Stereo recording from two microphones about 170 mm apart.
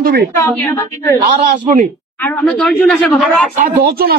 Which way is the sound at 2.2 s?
10° left (ahead or behind).